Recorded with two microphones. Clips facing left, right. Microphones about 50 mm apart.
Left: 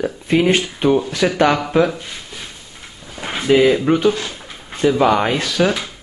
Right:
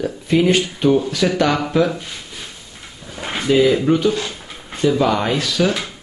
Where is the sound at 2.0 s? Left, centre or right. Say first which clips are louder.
Left 1 dB; centre.